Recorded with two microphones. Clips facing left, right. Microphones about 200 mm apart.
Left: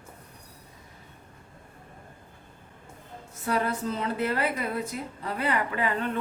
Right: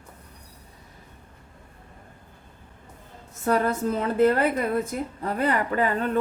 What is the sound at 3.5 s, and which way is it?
A woman's voice, 50° right (ahead or behind).